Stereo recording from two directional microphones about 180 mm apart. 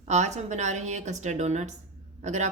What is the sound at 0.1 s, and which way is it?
Speech, 40° right (ahead or behind).